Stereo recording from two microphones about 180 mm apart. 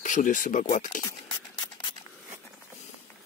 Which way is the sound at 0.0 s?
45° left (ahead or behind).